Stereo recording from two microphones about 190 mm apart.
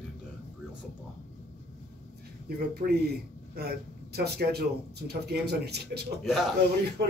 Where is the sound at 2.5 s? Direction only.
55° right (ahead or behind).